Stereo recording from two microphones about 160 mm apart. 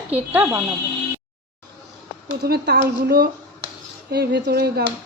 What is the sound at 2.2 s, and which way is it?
Speech, 75° right (ahead or behind).